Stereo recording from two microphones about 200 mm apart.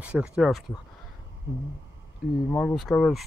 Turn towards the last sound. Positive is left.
turn(degrees=0)  # may be behind; listen again after turning